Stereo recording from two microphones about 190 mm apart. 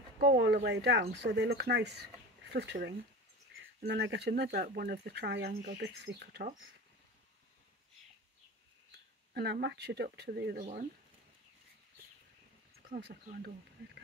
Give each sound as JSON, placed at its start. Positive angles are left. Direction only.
{"t": 0.2, "sound": "speech", "side_deg": -60}
{"t": 9.3, "sound": "speech", "side_deg": -60}
{"t": 10.6, "sound": "speech", "side_deg": -40}
{"t": 12.9, "sound": "speech", "side_deg": -50}